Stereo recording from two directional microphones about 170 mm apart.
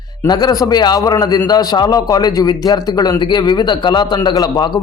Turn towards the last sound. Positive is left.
turn(degrees=25)  # may be behind; listen again after turning